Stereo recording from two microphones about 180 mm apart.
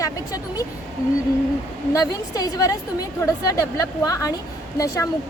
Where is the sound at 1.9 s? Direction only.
20° left (ahead or behind).